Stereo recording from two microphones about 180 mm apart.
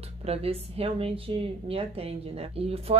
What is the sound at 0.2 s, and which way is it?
Speech, 35° right (ahead or behind).